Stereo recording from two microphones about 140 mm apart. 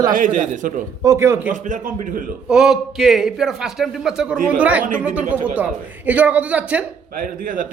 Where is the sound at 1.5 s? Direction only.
65° right (ahead or behind).